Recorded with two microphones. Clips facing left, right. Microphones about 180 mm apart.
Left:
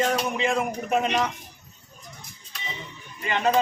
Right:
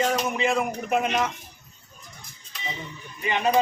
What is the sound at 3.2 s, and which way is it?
Speech, 15° right (ahead or behind).